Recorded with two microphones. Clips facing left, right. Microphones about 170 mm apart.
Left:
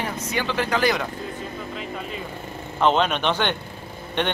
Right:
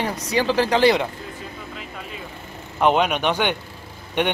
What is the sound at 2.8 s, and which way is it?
Speech, 10° right (ahead or behind).